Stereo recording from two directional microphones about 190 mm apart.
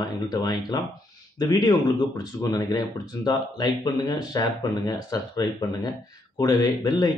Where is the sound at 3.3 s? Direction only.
20° left (ahead or behind).